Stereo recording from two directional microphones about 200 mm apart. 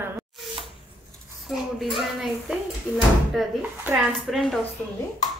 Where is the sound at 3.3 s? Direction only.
5° right (ahead or behind).